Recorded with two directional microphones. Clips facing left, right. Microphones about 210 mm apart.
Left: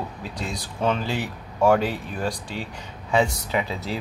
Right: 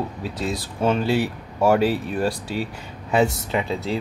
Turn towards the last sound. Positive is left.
turn(degrees=0)  # may be behind; listen again after turning